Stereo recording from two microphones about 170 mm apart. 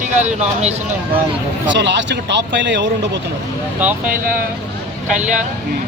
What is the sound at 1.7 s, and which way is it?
A man's voice, 90° right.